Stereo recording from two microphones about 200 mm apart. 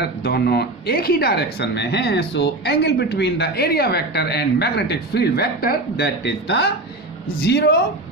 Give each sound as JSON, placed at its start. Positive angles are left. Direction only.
{"t": 0.0, "sound": "speech", "side_deg": 55}